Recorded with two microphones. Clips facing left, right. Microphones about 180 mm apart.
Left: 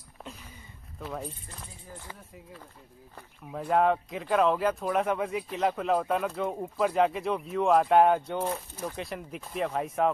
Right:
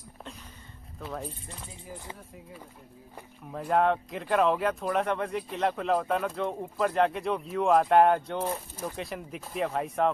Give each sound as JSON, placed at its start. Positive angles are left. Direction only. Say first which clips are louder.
{"t": 0.9, "sound": "speech", "louder": "even", "side_deg": 0}
{"t": 1.9, "sound": "speech", "louder": "right 3 dB", "side_deg": -15}
{"t": 3.4, "sound": "speech", "louder": "even", "side_deg": 0}